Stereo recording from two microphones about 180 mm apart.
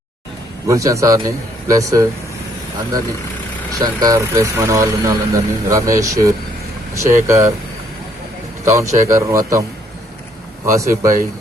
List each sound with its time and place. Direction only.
0.7 s speech: 15° right (ahead or behind)
3.8 s speech: 20° right (ahead or behind)
8.6 s speech: 15° right (ahead or behind)
10.7 s speech: 15° right (ahead or behind)